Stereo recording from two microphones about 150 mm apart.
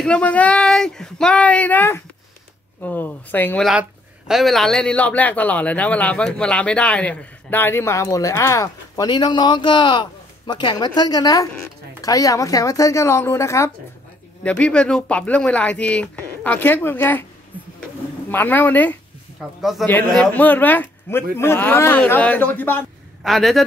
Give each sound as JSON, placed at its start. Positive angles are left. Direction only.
{"t": 0.0, "sound": "a man's voice", "side_deg": 10}
{"t": 4.3, "sound": "a man's voice", "side_deg": 0}
{"t": 14.4, "sound": "a man's voice", "side_deg": 5}
{"t": 18.3, "sound": "a man's voice", "side_deg": 15}
{"t": 19.6, "sound": "a man's voice", "side_deg": 0}
{"t": 23.2, "sound": "a man's voice", "side_deg": 0}